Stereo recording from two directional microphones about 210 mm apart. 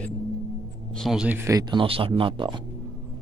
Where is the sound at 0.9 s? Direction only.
Centre (ahead or behind); by 2.6 s 25° right (ahead or behind).